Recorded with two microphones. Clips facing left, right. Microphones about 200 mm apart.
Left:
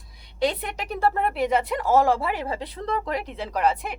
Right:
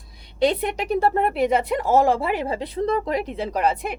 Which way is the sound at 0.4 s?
25° right (ahead or behind).